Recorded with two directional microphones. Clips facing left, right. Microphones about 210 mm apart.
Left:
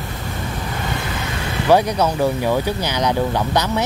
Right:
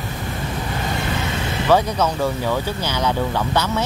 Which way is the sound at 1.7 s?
15° left (ahead or behind).